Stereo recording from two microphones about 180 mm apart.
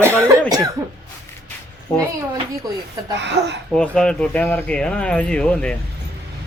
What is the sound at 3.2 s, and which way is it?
Speech, 75° right (ahead or behind).